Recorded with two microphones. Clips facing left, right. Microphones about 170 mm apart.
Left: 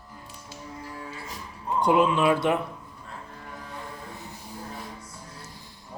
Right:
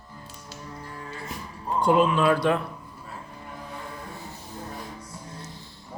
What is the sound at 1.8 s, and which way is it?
Speech, 20° left (ahead or behind).